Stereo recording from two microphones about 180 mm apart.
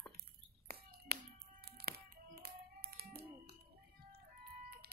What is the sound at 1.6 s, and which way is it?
Music, 60° right (ahead or behind).